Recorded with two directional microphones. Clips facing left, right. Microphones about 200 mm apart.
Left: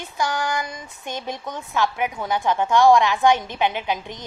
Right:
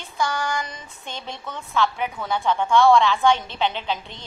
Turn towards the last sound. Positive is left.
turn(degrees=15)  # may be behind; listen again after turning